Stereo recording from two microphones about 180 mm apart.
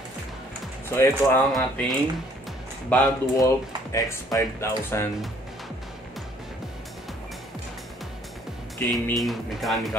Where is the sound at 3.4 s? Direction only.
20° left (ahead or behind).